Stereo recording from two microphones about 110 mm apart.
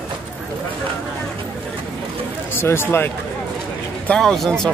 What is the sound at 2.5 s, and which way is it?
Speech, 20° left (ahead or behind).